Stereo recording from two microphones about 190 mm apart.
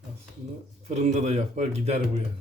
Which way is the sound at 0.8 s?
35° right (ahead or behind).